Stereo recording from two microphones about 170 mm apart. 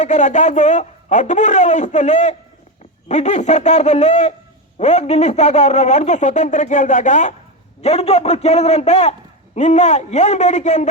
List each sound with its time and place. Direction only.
0.0 s a man's voice: 45° left (ahead or behind)